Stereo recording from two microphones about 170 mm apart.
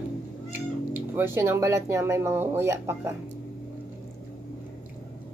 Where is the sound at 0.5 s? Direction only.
10° right (ahead or behind).